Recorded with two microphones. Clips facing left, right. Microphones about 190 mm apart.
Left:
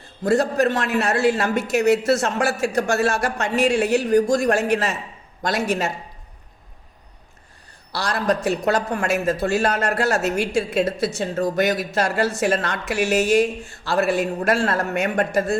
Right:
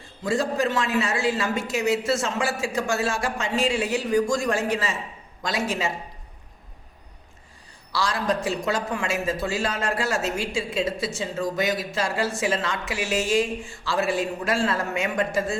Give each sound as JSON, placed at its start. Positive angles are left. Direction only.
{"t": 0.2, "sound": "a woman's voice", "side_deg": 65}
{"t": 7.9, "sound": "a woman's voice", "side_deg": 65}